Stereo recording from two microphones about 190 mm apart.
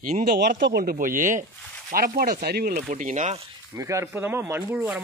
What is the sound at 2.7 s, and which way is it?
Speech, 40° right (ahead or behind).